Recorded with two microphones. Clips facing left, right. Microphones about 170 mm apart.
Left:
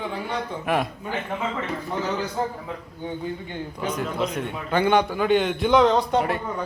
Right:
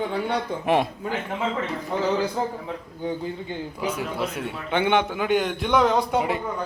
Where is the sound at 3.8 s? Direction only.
5° right (ahead or behind).